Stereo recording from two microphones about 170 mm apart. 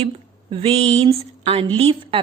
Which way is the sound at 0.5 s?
35° right (ahead or behind).